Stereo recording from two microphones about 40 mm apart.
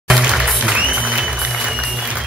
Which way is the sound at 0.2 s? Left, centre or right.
Right.